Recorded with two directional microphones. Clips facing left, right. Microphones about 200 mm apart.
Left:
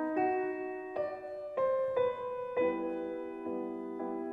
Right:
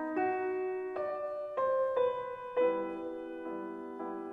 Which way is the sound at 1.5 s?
10° left (ahead or behind).